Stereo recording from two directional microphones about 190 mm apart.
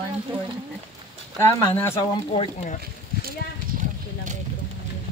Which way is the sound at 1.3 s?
15° left (ahead or behind).